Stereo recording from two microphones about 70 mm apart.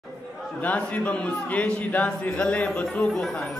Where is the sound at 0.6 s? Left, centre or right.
Left.